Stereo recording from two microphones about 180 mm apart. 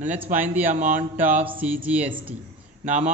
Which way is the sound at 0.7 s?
45° right (ahead or behind).